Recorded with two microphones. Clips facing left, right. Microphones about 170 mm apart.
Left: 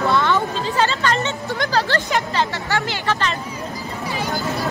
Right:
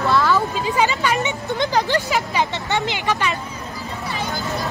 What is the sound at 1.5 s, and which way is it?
Speech, 20° right (ahead or behind).